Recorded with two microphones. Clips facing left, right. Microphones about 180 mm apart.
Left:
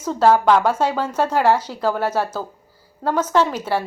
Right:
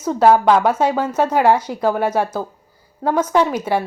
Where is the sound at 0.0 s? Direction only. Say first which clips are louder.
Right 2 dB; 10° right (ahead or behind).